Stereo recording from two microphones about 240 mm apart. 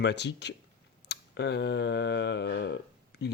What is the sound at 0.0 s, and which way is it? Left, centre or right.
Speech, left.